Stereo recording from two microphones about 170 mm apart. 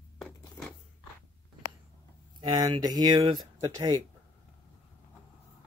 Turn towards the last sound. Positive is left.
turn(degrees=-20)  # may be behind; listen again after turning